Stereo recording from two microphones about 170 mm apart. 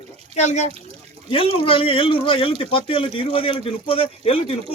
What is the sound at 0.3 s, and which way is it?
A man's voice, 40° left (ahead or behind).